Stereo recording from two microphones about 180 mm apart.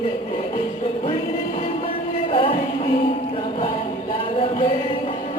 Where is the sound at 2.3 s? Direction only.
30° left (ahead or behind).